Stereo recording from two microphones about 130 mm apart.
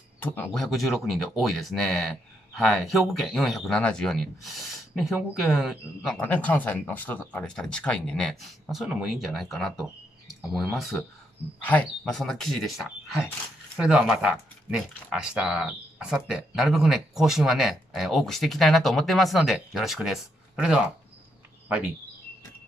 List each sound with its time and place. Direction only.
0.2 s speech: 15° left (ahead or behind)
0.5 s speech: centre (ahead or behind)
6.2 s speech: 10° left (ahead or behind); by 20.8 s 5° right (ahead or behind)